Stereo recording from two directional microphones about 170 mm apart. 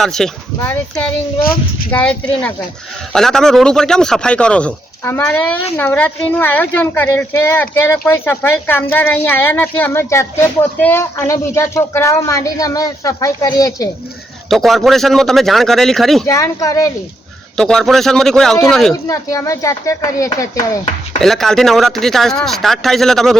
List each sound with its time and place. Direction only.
0.0 s a man's voice: 5° left (ahead or behind); by 13.9 s 20° left (ahead or behind)
14.5 s a man's voice: centre (ahead or behind)
16.2 s speech: 20° left (ahead or behind)
17.6 s a man's voice: 5° left (ahead or behind)
19.0 s speech: 20° left (ahead or behind)
21.2 s a man's voice: centre (ahead or behind)